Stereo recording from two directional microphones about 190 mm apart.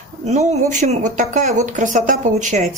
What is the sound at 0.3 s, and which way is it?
A woman's voice, 35° right (ahead or behind).